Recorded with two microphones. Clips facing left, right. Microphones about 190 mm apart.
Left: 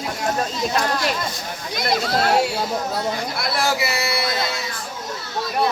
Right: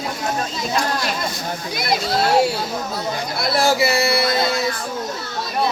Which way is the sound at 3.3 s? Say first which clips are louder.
Right 8 dB; 25° right (ahead or behind).